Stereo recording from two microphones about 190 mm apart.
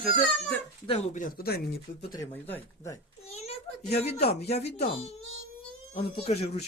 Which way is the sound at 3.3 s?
35° left (ahead or behind).